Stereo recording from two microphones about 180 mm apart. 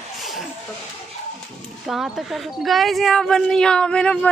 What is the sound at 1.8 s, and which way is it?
A woman's voice, centre (ahead or behind).